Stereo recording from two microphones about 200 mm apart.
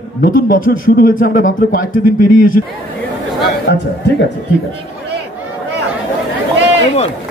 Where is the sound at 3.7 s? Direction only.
60° left (ahead or behind).